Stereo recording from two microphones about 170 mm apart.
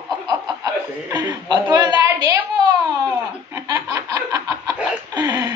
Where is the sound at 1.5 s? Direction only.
25° right (ahead or behind).